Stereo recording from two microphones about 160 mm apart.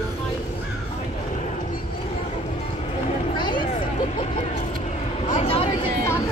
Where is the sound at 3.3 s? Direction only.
30° left (ahead or behind).